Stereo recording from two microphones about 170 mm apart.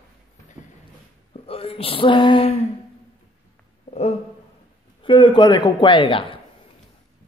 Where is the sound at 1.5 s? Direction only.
35° left (ahead or behind).